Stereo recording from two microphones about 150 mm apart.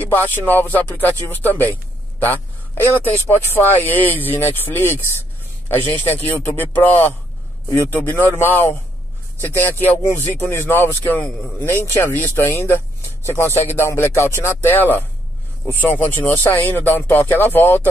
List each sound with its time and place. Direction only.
0.0 s speech: 10° left (ahead or behind)
2.1 s a sound: 15° left (ahead or behind)
3.5 s speech: 10° left (ahead or behind)